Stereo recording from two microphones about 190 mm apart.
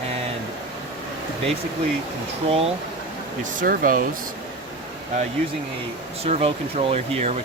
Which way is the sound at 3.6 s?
50° right (ahead or behind).